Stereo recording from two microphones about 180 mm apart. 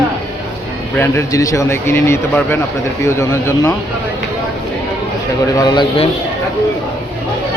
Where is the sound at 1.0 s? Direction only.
15° left (ahead or behind).